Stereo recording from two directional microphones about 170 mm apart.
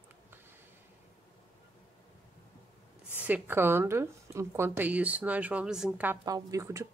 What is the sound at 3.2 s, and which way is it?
A woman's voice, 10° right (ahead or behind).